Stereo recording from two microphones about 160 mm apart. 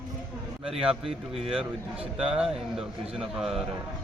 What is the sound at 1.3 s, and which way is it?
Speech, 35° right (ahead or behind).